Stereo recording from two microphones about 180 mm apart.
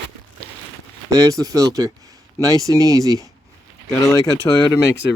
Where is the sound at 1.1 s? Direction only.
20° right (ahead or behind).